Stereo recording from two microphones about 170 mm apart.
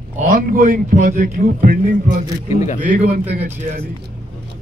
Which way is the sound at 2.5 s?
40° left (ahead or behind).